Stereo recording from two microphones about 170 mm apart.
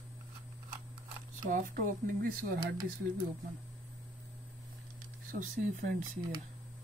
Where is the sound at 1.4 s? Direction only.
50° right (ahead or behind).